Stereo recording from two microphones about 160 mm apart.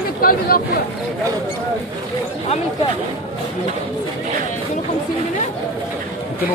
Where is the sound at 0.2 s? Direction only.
65° left (ahead or behind).